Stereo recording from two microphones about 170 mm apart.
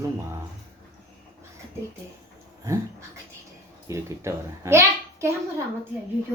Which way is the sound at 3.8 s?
15° right (ahead or behind).